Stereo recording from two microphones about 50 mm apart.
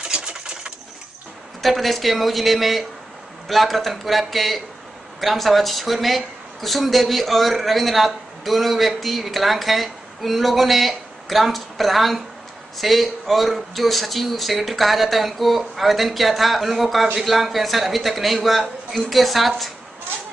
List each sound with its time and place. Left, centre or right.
0.1 s bird: centre
1.6 s speech: centre